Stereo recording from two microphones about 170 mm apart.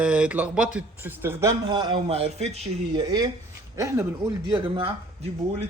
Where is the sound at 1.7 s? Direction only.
30° right (ahead or behind).